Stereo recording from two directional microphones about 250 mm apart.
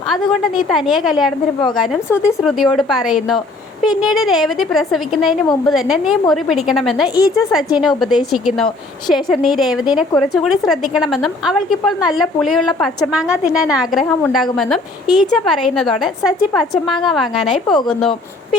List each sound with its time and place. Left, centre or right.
0.1 s a woman's voice: centre
2.0 s speech: centre
2.4 s a woman's voice: centre